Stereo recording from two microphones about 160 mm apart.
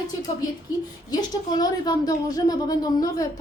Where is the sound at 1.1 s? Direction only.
25° left (ahead or behind).